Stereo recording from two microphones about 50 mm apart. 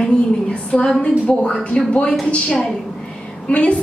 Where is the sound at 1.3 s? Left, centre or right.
Centre.